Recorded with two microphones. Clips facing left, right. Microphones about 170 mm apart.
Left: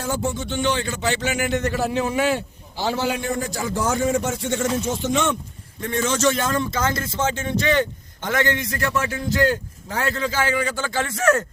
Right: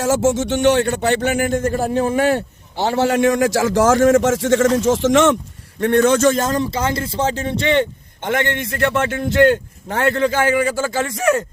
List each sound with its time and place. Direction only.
0.0 s a man's voice: 90° right
5.8 s a man's voice: 60° right (ahead or behind); by 8.4 s 20° right (ahead or behind)
8.5 s a man's voice: 60° right (ahead or behind)
10.7 s speech: 5° right (ahead or behind)